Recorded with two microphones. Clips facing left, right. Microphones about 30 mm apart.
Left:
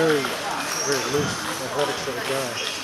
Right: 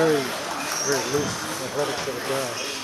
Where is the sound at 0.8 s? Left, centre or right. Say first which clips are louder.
Even; centre.